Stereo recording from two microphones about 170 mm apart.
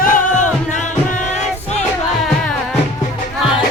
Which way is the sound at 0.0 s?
50° left (ahead or behind).